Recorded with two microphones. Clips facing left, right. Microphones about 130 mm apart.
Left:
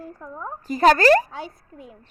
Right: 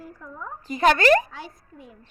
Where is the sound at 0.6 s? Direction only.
35° left (ahead or behind).